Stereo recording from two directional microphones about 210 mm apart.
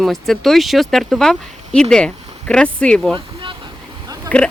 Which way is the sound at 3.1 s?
20° right (ahead or behind).